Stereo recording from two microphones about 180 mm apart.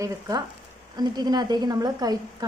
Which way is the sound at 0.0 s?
20° right (ahead or behind).